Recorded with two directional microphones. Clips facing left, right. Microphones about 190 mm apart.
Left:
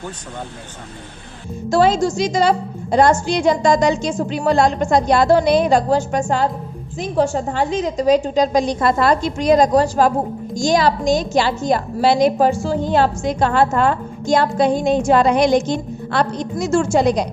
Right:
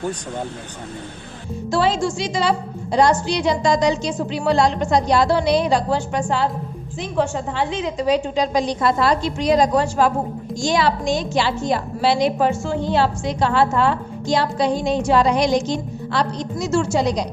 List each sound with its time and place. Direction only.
1.7 s a woman's voice: 45° left (ahead or behind)